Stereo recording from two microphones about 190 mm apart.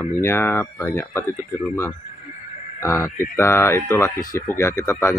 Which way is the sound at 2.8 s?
15° left (ahead or behind).